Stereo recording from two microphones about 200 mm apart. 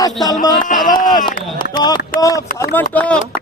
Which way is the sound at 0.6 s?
40° left (ahead or behind).